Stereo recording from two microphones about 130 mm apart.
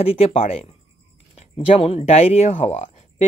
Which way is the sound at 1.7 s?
45° left (ahead or behind).